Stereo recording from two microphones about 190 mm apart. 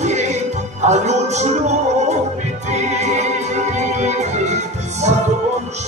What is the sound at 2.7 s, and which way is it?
Music, 35° right (ahead or behind).